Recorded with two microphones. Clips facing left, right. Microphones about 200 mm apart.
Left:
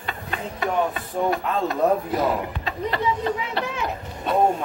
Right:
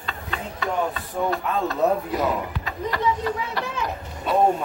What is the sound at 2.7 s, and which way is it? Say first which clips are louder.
Speech: even; 25° left (ahead or behind).